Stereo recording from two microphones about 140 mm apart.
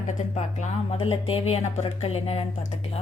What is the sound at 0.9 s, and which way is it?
Speech, 45° left (ahead or behind).